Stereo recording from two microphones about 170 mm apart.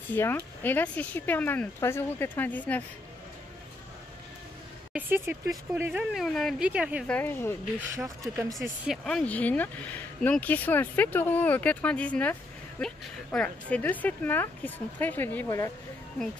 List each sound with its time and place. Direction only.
0.1 s speech: 15° left (ahead or behind)
4.9 s speech: 10° right (ahead or behind)
6.2 s speech: centre (ahead or behind)
7.1 s speech: 10° left (ahead or behind)
7.9 s speech: 15° right (ahead or behind)
8.5 s speech: centre (ahead or behind)